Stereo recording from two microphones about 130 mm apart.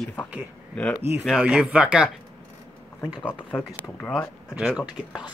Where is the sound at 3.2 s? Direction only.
15° left (ahead or behind).